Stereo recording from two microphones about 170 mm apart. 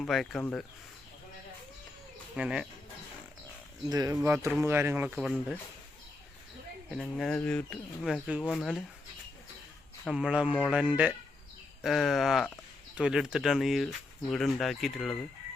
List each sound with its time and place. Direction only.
0.0 s speech: centre (ahead or behind)
2.3 s speech: 5° right (ahead or behind)
3.8 s speech: 20° right (ahead or behind); by 5.5 s 5° right (ahead or behind)
6.9 s speech: 5° left (ahead or behind)
10.1 s speech: 5° right (ahead or behind)